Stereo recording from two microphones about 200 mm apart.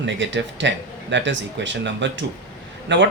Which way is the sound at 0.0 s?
65° right (ahead or behind).